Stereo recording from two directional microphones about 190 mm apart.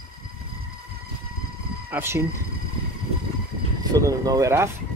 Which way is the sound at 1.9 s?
10° right (ahead or behind).